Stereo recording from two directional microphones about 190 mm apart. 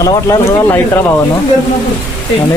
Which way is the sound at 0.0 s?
15° left (ahead or behind).